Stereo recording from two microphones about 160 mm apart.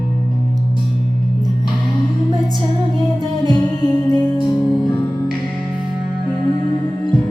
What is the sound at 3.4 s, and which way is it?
Music, 25° left (ahead or behind).